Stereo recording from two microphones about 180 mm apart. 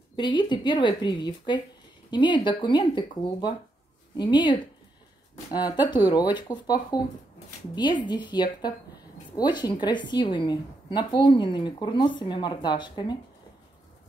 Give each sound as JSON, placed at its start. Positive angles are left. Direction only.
{"t": 0.1, "sound": "a woman's voice", "side_deg": 25}